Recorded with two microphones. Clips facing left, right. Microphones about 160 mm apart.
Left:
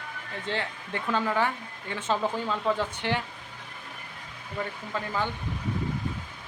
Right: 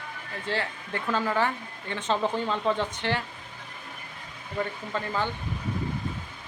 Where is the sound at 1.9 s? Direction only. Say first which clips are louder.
Right 1 dB; 5° left (ahead or behind).